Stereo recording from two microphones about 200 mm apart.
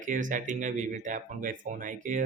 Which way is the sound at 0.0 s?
40° right (ahead or behind).